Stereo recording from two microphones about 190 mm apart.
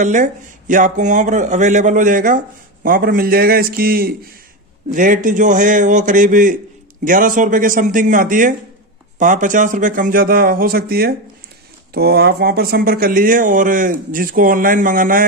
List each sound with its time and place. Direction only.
0.0 s a man's voice: 40° right (ahead or behind)